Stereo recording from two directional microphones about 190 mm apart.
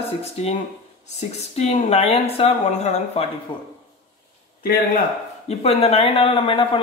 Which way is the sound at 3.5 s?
25° left (ahead or behind).